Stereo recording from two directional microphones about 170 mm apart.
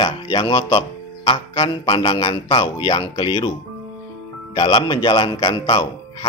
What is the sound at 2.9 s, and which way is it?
Speech, 35° left (ahead or behind).